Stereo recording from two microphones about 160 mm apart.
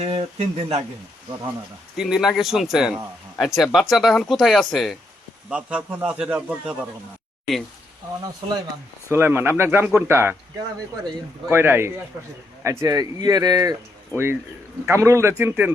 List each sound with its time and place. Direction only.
0.0 s speech: 40° right (ahead or behind)
2.0 s a man's voice: 5° right (ahead or behind)
9.0 s a man's voice: 15° right (ahead or behind)
11.4 s a man's voice: 15° right (ahead or behind)